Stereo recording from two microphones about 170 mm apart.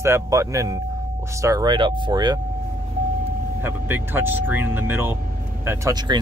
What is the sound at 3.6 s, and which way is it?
Speech, 15° right (ahead or behind).